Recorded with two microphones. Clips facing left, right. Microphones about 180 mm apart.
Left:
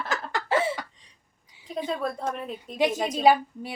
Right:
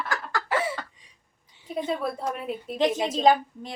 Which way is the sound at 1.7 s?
5° right (ahead or behind).